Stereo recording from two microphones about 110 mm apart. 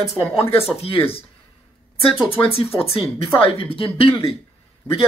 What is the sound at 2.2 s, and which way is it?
Speech, 60° left (ahead or behind).